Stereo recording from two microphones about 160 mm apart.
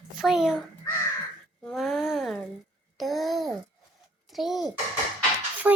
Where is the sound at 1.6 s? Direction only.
Centre (ahead or behind).